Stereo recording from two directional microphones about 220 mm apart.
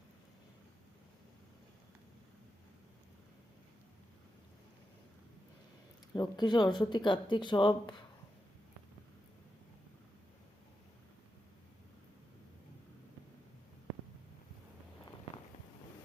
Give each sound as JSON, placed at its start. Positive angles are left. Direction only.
{"t": 6.1, "sound": "speech", "side_deg": 20}